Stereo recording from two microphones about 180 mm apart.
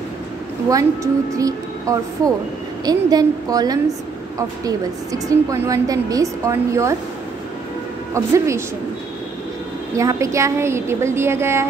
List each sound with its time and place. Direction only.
0.7 s a woman's voice: 20° right (ahead or behind)
8.1 s a woman's voice: 15° right (ahead or behind)
9.9 s a woman's voice: 15° right (ahead or behind)